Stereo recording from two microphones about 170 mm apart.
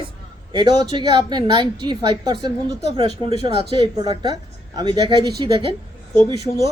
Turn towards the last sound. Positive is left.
turn(degrees=-20)  # may be behind; listen again after turning